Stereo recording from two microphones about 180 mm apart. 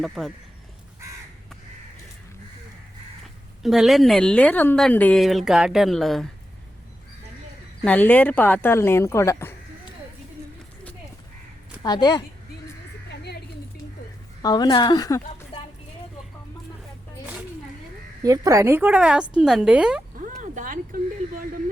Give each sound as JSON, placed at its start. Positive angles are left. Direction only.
{"t": 0.0, "sound": "speech", "side_deg": 0}
{"t": 3.6, "sound": "speech", "side_deg": 0}
{"t": 7.9, "sound": "speech", "side_deg": 10}
{"t": 11.8, "sound": "a woman's voice", "side_deg": 20}
{"t": 13.1, "sound": "a sound", "side_deg": 65}
{"t": 14.4, "sound": "a woman's voice", "side_deg": 20}
{"t": 18.2, "sound": "speech", "side_deg": -20}
{"t": 20.1, "sound": "a sound", "side_deg": -45}